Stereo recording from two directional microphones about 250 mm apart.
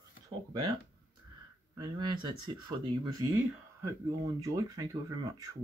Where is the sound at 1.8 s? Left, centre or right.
Centre.